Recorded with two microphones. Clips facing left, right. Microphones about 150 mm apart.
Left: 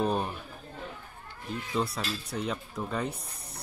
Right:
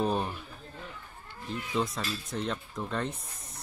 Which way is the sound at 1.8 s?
5° left (ahead or behind).